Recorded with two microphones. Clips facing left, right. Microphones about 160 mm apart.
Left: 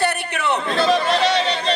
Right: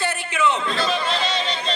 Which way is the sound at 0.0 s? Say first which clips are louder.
Left 1 dB; 65° left (ahead or behind).